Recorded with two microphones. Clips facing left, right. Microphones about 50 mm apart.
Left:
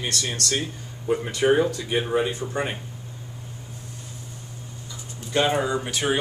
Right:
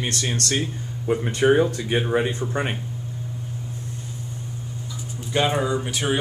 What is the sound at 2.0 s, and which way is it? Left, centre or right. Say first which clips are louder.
Speech: right 1 dB; centre.